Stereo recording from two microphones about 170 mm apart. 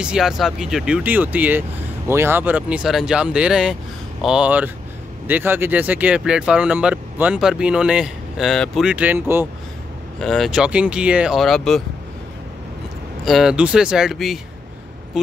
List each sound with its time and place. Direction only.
0.0 s speech: 5° right (ahead or behind)
10.2 s speech: centre (ahead or behind)
13.2 s speech: centre (ahead or behind)